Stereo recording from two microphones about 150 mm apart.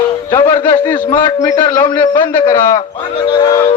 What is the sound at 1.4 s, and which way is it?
A man's voice, 20° left (ahead or behind).